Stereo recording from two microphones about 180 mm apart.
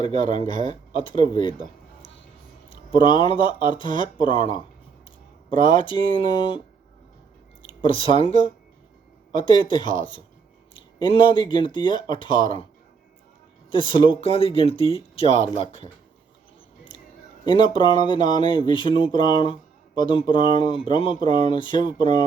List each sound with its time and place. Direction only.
0.2 s speech: 45° right (ahead or behind)
0.9 s speech: 25° left (ahead or behind)
2.6 s speech: 25° left (ahead or behind)
5.6 s speech: 30° left (ahead or behind)
7.9 s speech: 30° left (ahead or behind)
13.7 s speech: 25° left (ahead or behind)
15.3 s speech: 40° right (ahead or behind)
17.4 s speech: 25° left (ahead or behind)